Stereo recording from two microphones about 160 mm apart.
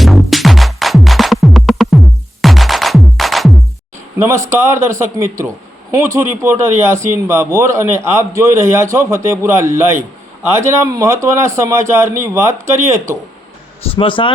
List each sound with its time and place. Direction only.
0.0 s music: centre (ahead or behind)
4.4 s speech: 15° right (ahead or behind)
13.8 s speech: 35° left (ahead or behind)